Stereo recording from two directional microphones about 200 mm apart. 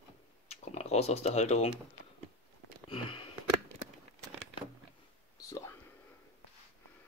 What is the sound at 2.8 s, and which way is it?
Sniff, 30° left (ahead or behind).